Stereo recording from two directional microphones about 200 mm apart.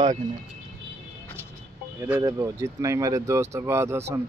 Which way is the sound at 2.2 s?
15° right (ahead or behind).